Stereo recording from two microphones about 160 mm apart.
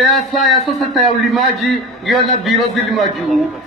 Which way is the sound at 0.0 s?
Centre (ahead or behind).